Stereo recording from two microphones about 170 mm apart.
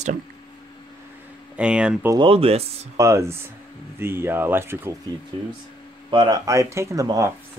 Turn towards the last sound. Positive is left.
turn(degrees=-20)  # may be behind; listen again after turning